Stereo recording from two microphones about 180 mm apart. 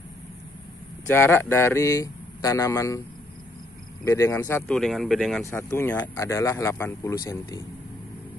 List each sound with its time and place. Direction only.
1.0 s speech: 10° left (ahead or behind)
4.0 s speech: 15° left (ahead or behind); by 5.4 s centre (ahead or behind)
5.4 s speech: 15° left (ahead or behind)